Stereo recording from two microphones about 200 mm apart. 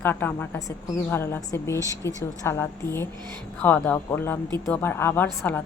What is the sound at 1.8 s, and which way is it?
Speech, 15° right (ahead or behind).